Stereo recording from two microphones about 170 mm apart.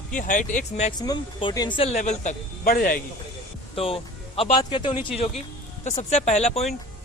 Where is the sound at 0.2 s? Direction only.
50° left (ahead or behind).